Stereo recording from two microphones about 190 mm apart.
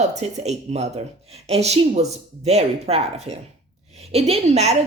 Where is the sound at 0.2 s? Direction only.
35° right (ahead or behind).